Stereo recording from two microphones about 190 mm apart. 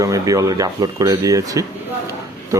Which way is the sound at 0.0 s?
15° right (ahead or behind).